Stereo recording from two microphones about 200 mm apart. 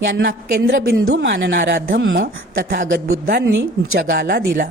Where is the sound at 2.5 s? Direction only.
45° right (ahead or behind).